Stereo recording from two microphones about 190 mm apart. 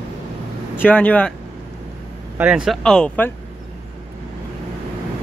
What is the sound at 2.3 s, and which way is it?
Speech, 5° right (ahead or behind).